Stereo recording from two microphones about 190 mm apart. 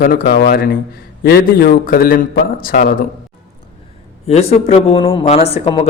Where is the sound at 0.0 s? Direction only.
50° left (ahead or behind).